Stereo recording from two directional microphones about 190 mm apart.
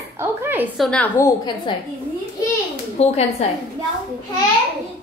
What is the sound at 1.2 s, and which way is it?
Speech, 25° left (ahead or behind).